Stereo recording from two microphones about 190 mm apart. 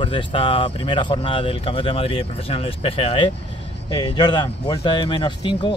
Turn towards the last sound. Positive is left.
turn(degrees=25)  # may be behind; listen again after turning